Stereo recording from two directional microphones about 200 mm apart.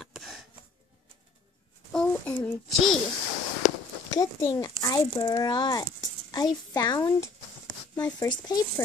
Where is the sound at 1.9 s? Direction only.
5° left (ahead or behind).